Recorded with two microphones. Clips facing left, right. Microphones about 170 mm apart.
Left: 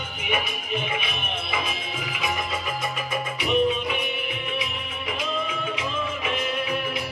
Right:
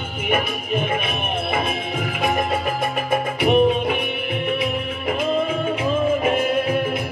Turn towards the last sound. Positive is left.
turn(degrees=-50)  # may be behind; listen again after turning